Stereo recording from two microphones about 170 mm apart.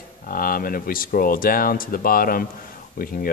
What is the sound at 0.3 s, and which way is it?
Speech, 55° left (ahead or behind).